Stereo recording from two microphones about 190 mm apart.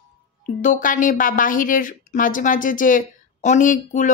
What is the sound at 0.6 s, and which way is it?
A woman's voice, 45° left (ahead or behind).